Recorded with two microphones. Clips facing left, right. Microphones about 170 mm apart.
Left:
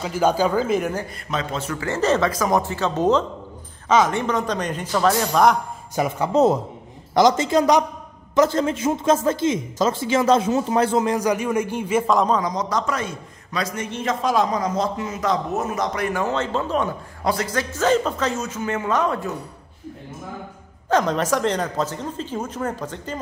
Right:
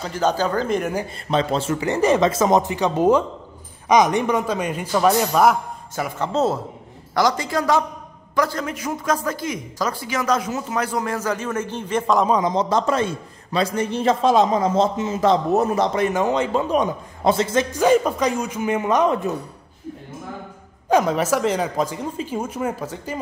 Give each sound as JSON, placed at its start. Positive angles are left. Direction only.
{"t": 0.0, "sound": "speech", "side_deg": 10}
{"t": 1.3, "sound": "speech", "side_deg": -30}
{"t": 1.8, "sound": "speech", "side_deg": -15}
{"t": 5.9, "sound": "speech", "side_deg": 15}
{"t": 12.3, "sound": "a man's voice", "side_deg": -20}
{"t": 17.7, "sound": "speech", "side_deg": -10}
{"t": 20.9, "sound": "speech", "side_deg": -10}